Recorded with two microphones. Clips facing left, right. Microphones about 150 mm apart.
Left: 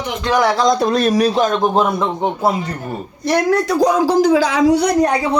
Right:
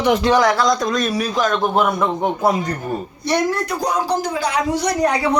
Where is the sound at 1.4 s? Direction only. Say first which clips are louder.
Left 3 dB; 20° left (ahead or behind).